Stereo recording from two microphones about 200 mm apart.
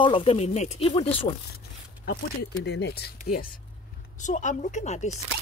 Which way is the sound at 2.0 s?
55° left (ahead or behind).